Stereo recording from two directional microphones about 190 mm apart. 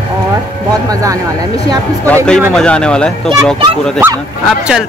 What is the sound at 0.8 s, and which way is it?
Speech, 20° right (ahead or behind).